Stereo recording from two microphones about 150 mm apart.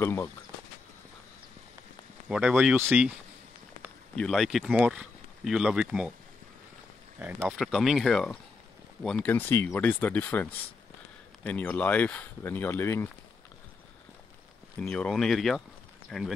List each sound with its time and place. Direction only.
0.0 s speech: 15° left (ahead or behind)
2.2 s speech: 5° right (ahead or behind)
4.1 s speech: 5° left (ahead or behind)
7.2 s speech: 10° right (ahead or behind)
7.5 s speech: centre (ahead or behind)
14.8 s speech: 5° left (ahead or behind)